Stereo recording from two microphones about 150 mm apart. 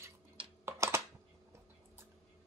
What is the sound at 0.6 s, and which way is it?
Typing, 15° right (ahead or behind).